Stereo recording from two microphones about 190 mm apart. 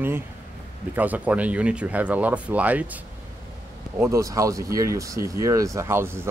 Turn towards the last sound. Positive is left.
turn(degrees=-15)  # may be behind; listen again after turning